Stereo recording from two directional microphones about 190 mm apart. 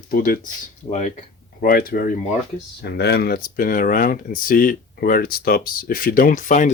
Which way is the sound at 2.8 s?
60° left (ahead or behind).